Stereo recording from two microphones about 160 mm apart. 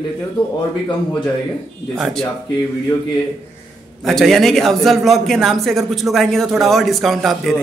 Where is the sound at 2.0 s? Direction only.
5° left (ahead or behind).